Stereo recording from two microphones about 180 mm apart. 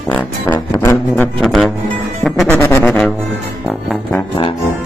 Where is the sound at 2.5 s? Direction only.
15° left (ahead or behind).